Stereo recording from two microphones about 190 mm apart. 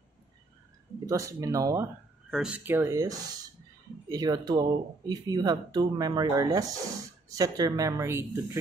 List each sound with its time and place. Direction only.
1.0 s speech: 15° right (ahead or behind)
2.3 s speech: 5° right (ahead or behind)